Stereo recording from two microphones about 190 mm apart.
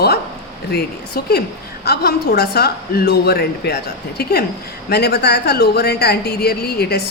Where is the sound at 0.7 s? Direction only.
55° left (ahead or behind).